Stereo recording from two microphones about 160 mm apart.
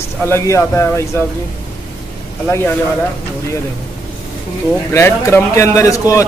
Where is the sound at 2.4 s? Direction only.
15° left (ahead or behind).